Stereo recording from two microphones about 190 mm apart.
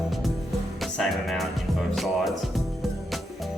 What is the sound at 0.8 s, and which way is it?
Music, centre (ahead or behind).